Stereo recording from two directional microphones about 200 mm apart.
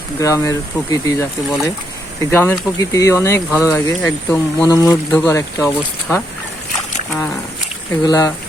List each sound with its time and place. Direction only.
0.2 s speech: 15° left (ahead or behind)
8.0 s speech: 15° left (ahead or behind)